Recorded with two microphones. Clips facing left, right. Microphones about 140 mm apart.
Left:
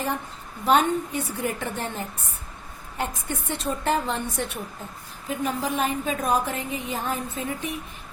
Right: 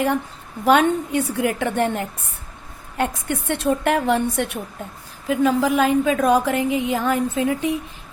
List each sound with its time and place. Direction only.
0.6 s a woman's voice: 75° right (ahead or behind)
5.3 s a woman's voice: 90° right